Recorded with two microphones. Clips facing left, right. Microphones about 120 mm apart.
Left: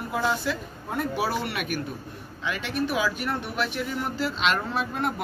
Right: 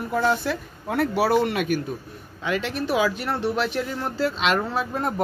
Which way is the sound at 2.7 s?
35° right (ahead or behind).